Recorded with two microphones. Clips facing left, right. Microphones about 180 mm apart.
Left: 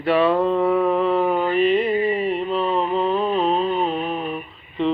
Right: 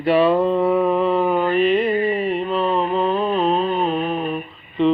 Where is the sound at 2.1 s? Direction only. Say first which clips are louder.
Right 1 dB; centre (ahead or behind).